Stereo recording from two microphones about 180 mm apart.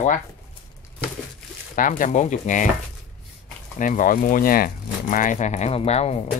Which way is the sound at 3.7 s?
45° left (ahead or behind).